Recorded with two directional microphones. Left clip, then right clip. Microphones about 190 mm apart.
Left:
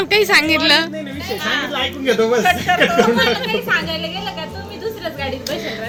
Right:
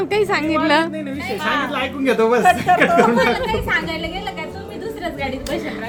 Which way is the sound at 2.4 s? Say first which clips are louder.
Right 1 dB; 40° right (ahead or behind).